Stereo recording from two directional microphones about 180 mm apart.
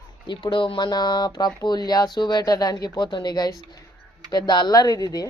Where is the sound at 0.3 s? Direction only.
25° left (ahead or behind).